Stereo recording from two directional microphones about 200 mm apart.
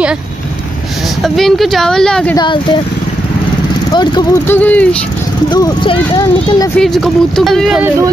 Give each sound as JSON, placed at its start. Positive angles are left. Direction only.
{"t": 1.2, "sound": "speech", "side_deg": 0}
{"t": 2.3, "sound": "speech", "side_deg": 20}
{"t": 3.9, "sound": "speech", "side_deg": 20}
{"t": 4.5, "sound": "speech", "side_deg": 10}
{"t": 5.5, "sound": "speech", "side_deg": 20}
{"t": 6.8, "sound": "speech", "side_deg": 0}